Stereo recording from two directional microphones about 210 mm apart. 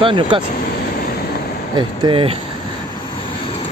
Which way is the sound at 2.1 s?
25° right (ahead or behind).